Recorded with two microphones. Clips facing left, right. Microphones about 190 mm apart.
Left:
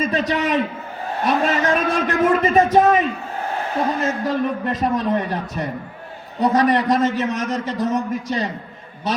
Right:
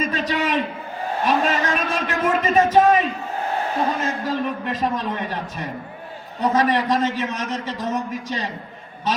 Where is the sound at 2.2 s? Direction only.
40° left (ahead or behind).